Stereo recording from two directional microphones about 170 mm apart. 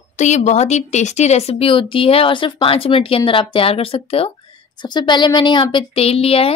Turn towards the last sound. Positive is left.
turn(degrees=35)  # may be behind; listen again after turning